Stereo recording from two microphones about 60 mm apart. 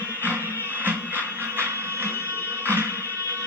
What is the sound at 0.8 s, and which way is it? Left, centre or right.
Music, right.